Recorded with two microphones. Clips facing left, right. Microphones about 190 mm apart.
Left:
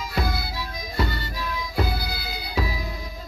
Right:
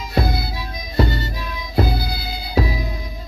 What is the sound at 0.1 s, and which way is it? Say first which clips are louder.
Music: right 7 dB; 25° right (ahead or behind).